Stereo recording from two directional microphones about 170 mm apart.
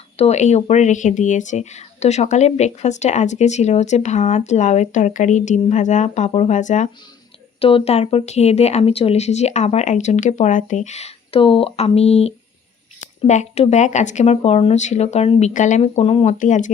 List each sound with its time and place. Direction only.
0.2 s speech: 40° left (ahead or behind)
7.6 s speech: 35° left (ahead or behind)